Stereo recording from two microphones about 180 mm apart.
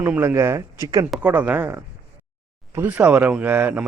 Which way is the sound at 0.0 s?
10° right (ahead or behind).